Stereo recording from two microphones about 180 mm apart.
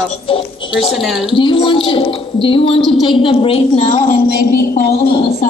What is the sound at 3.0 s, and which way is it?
A woman's voice, 30° left (ahead or behind).